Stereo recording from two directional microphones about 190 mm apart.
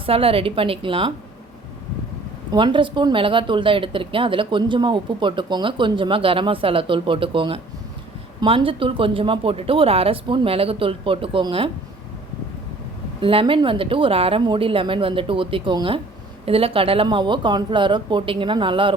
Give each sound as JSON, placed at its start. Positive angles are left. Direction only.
{"t": 0.0, "sound": "speech", "side_deg": -30}
{"t": 2.5, "sound": "speech", "side_deg": -25}
{"t": 13.2, "sound": "speech", "side_deg": -25}